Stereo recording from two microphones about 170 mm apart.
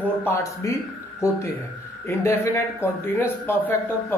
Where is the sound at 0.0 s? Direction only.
10° left (ahead or behind).